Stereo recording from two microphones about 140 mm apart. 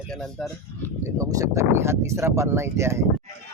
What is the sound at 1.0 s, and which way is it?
Speech, 20° right (ahead or behind).